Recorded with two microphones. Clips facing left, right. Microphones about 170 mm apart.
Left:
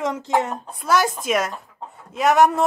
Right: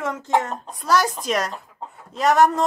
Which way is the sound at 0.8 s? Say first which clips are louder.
Left 1 dB; centre (ahead or behind).